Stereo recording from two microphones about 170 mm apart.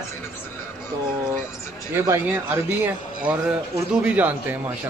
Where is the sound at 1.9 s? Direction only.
15° right (ahead or behind).